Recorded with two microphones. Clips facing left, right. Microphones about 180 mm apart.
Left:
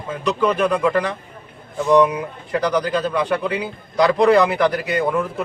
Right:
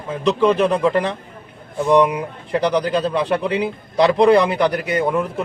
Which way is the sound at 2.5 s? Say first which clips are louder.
Right 2 dB; 25° right (ahead or behind).